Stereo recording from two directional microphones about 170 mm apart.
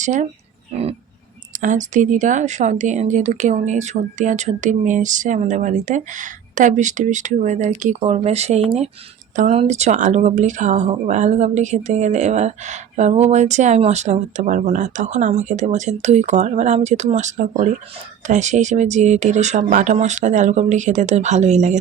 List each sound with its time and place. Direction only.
0.0 s speech: 45° right (ahead or behind)
1.6 s speech: 50° right (ahead or behind)